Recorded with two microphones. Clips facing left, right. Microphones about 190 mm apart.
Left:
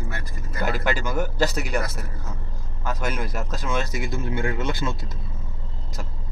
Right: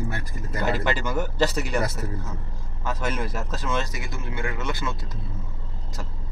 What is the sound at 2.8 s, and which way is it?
Speech, centre (ahead or behind).